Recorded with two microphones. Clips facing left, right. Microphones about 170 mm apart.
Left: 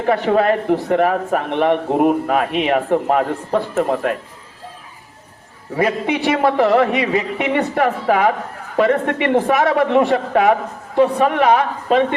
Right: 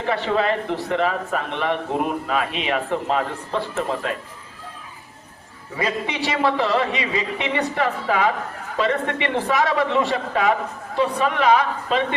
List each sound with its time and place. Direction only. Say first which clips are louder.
0.0 s a man's voice: left 6 dB; 50° left (ahead or behind)
5.7 s a man's voice: left 7 dB; 55° left (ahead or behind)